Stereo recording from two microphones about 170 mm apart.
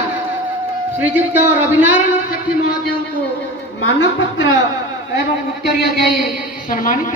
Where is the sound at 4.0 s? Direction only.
90° left.